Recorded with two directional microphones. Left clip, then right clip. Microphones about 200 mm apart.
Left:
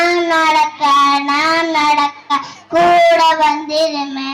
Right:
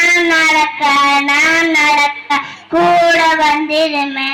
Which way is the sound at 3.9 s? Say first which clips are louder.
Right 4 dB; 40° right (ahead or behind).